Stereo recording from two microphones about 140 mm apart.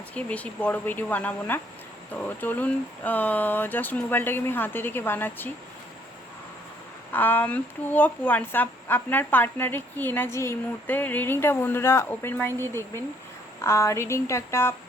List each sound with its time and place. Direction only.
0.1 s speech: 10° left (ahead or behind)
7.1 s speech: 15° left (ahead or behind)